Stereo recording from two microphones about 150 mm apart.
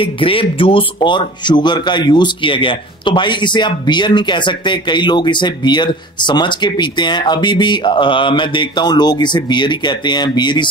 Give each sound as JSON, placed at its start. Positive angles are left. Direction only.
{"t": 0.0, "sound": "speech", "side_deg": 35}